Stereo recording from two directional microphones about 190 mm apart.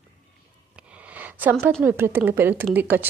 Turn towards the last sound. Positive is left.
turn(degrees=-10)  # may be behind; listen again after turning